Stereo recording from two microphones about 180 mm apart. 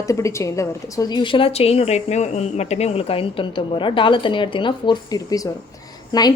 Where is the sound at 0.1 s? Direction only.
15° left (ahead or behind).